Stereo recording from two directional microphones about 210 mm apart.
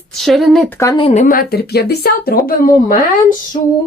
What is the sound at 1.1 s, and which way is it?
Speech, 35° left (ahead or behind).